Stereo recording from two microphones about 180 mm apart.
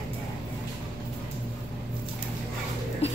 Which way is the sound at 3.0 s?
35° left (ahead or behind).